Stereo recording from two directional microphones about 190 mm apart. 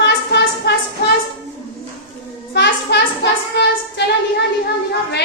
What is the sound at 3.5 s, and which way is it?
Speech, 65° left (ahead or behind).